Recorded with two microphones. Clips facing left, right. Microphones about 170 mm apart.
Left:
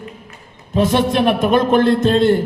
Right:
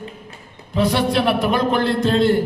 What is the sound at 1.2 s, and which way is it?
A man's voice, 20° left (ahead or behind).